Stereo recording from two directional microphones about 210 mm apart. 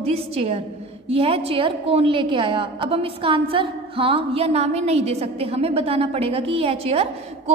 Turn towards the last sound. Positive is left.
turn(degrees=-30)  # may be behind; listen again after turning